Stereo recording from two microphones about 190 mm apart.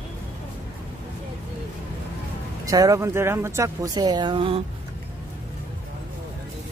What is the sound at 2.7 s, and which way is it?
Speech, 15° right (ahead or behind).